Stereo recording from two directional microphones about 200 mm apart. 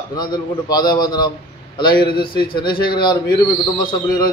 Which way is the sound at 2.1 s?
50° left (ahead or behind).